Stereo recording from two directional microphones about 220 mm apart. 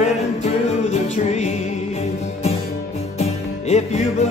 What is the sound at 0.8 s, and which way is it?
Music, 30° left (ahead or behind).